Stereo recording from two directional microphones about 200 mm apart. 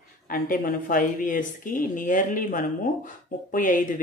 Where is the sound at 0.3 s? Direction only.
45° left (ahead or behind).